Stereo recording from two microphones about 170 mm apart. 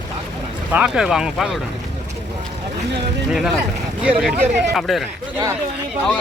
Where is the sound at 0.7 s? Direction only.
5° right (ahead or behind).